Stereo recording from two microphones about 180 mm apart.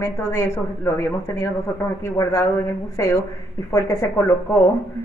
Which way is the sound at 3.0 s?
20° left (ahead or behind).